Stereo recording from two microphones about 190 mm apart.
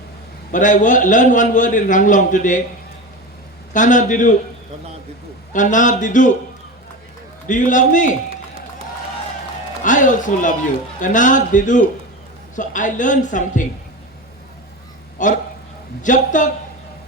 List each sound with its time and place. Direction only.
0.5 s a man's voice: 40° left (ahead or behind)
3.7 s a man's voice: 40° left (ahead or behind)
5.5 s a man's voice: 40° left (ahead or behind)
7.4 s a man's voice: 40° left (ahead or behind)
9.8 s a man's voice: 40° left (ahead or behind)
15.2 s a man's voice: 40° left (ahead or behind)